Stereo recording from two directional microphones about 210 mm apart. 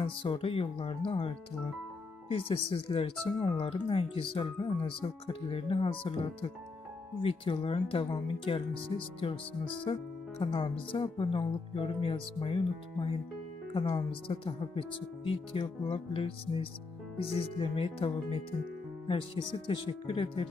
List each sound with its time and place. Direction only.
0.0 s speech: 25° left (ahead or behind)